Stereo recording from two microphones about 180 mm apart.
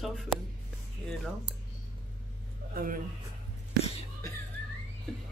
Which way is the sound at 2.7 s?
50° right (ahead or behind).